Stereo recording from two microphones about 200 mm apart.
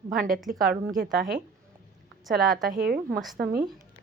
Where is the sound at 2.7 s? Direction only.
45° right (ahead or behind).